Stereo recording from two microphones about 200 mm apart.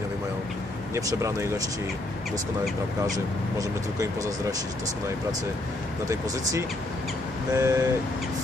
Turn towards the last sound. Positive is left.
turn(degrees=-15)  # may be behind; listen again after turning